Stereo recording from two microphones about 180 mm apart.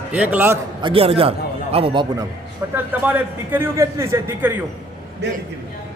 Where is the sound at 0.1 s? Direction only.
10° right (ahead or behind).